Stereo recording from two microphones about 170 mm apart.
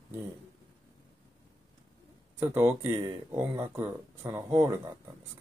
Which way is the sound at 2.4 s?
10° right (ahead or behind).